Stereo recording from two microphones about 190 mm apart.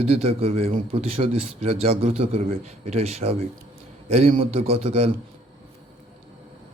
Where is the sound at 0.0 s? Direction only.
30° right (ahead or behind).